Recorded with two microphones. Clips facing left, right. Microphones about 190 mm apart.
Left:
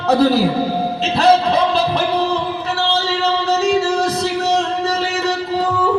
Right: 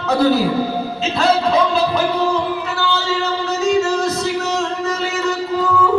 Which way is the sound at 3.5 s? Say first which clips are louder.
Right 1 dB; 35° left (ahead or behind).